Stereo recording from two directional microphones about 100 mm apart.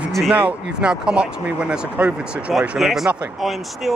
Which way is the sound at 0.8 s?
10° right (ahead or behind).